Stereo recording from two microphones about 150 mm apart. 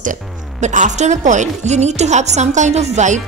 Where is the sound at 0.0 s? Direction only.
55° right (ahead or behind).